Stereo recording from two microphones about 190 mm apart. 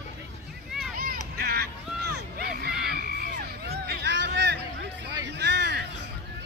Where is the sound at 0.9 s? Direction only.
50° right (ahead or behind).